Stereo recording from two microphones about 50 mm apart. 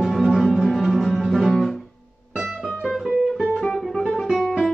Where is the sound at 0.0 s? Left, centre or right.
Centre.